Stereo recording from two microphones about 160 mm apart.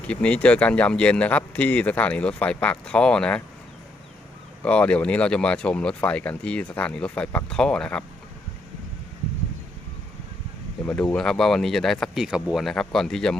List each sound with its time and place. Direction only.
0.1 s speech: 5° left (ahead or behind)
4.6 s speech: 5° left (ahead or behind)
10.8 s speech: 5° left (ahead or behind)